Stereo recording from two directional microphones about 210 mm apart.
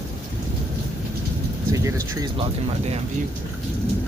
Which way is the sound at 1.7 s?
15° right (ahead or behind).